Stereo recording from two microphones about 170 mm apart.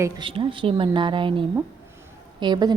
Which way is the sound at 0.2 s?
30° right (ahead or behind).